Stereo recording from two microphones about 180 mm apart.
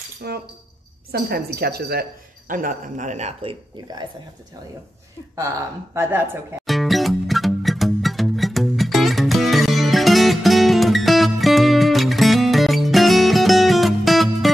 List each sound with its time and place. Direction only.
0.2 s speech: 60° right (ahead or behind); by 3.5 s 40° right (ahead or behind)
3.7 s speech: 25° right (ahead or behind)
5.9 s speech: 10° right (ahead or behind)
6.6 s music: centre (ahead or behind)